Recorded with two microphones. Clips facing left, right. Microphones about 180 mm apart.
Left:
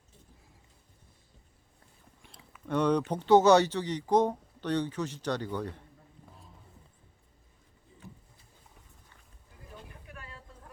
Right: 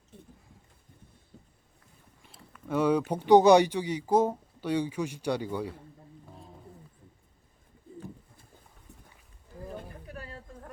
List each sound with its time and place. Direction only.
0.1 s horse: 60° right (ahead or behind)
2.2 s speech: centre (ahead or behind)
9.6 s a sound: 40° right (ahead or behind)